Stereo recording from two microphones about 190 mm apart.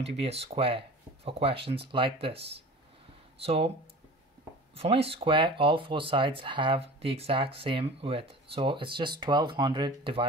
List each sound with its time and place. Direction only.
0.0 s speech: 30° right (ahead or behind)
4.7 s speech: 30° right (ahead or behind)